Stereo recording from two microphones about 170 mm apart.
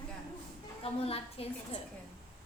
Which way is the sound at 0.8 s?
35° left (ahead or behind).